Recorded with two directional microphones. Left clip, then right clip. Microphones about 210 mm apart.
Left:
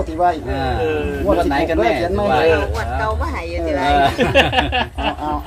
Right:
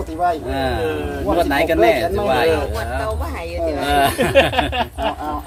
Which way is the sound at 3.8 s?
35° right (ahead or behind).